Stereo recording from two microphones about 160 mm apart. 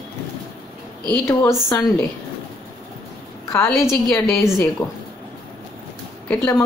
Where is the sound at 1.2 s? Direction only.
15° left (ahead or behind).